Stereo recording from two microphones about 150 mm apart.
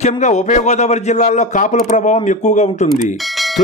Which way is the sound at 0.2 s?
50° left (ahead or behind).